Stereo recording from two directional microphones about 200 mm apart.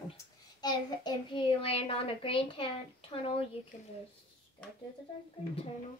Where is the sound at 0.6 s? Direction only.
20° left (ahead or behind).